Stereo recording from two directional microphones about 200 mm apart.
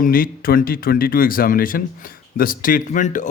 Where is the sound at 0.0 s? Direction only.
45° left (ahead or behind).